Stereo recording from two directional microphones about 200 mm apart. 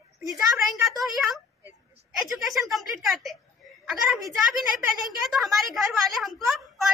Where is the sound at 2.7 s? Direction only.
Centre (ahead or behind).